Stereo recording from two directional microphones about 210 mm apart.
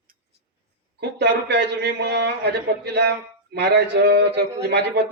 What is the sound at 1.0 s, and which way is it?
A man's voice, 55° right (ahead or behind).